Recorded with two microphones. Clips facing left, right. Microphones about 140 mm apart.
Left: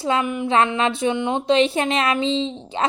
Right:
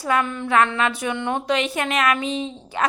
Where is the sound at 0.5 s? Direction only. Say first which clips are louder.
Even; 25° left (ahead or behind).